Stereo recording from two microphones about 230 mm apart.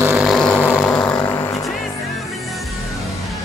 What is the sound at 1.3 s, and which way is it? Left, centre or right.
Music, centre.